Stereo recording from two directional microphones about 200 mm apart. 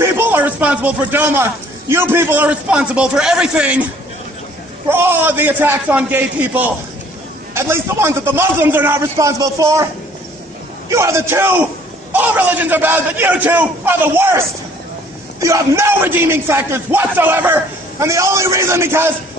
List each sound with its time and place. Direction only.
0.0 s speech: 10° right (ahead or behind)
4.8 s a man's voice: 10° right (ahead or behind)
10.9 s a man's voice: 15° right (ahead or behind)
15.4 s a man's voice: 15° right (ahead or behind)